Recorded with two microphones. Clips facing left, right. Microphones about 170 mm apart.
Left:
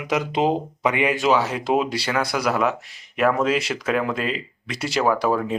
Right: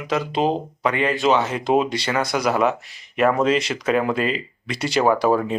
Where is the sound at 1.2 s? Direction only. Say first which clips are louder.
Right 3 dB; 5° left (ahead or behind).